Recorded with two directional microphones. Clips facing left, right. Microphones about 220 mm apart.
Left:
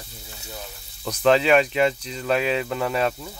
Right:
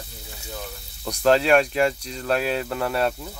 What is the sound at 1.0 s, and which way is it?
Speech, centre (ahead or behind).